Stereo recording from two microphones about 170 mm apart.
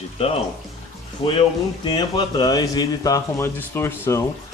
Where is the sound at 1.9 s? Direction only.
25° left (ahead or behind).